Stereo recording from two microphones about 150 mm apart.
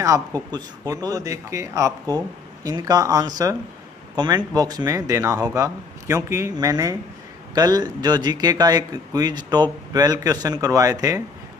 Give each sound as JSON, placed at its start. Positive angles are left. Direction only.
{"t": 0.0, "sound": "a man's voice", "side_deg": -25}